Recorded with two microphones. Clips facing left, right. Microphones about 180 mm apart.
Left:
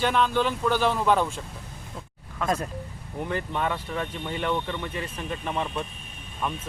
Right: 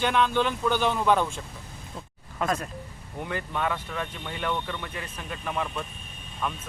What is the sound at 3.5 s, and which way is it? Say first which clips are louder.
Speech: right 1 dB; centre (ahead or behind).